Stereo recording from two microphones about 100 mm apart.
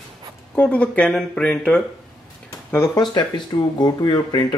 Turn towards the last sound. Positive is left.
turn(degrees=45)  # may be behind; listen again after turning